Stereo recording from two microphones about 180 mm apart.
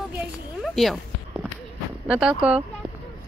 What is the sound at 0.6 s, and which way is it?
Cat, centre (ahead or behind).